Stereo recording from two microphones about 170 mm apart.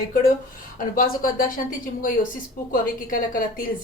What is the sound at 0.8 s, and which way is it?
Speech, 55° left (ahead or behind).